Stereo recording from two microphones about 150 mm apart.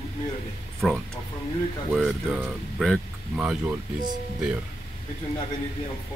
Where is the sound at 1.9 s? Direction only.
5° left (ahead or behind).